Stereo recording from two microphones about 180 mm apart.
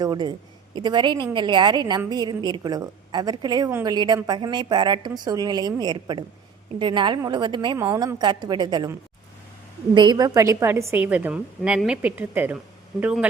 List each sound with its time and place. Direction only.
0.0 s a woman's voice: 25° right (ahead or behind); by 13.2 s 5° right (ahead or behind)